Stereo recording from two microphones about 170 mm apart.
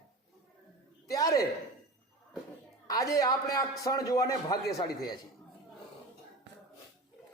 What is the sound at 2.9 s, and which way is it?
A man's voice, 20° left (ahead or behind).